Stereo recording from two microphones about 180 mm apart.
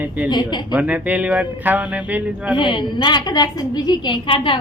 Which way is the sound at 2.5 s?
25° left (ahead or behind).